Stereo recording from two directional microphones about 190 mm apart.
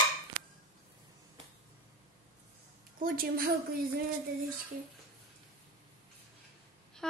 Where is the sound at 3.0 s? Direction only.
50° right (ahead or behind).